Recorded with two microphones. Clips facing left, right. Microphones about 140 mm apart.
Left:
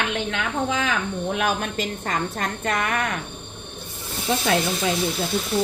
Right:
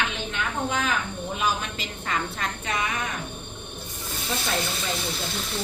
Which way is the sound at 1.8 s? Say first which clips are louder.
Left 4 dB; 45° left (ahead or behind).